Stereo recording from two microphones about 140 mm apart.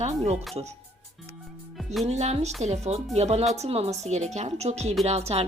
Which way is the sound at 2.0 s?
50° right (ahead or behind).